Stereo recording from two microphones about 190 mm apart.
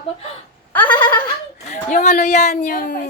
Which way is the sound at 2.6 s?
55° left (ahead or behind).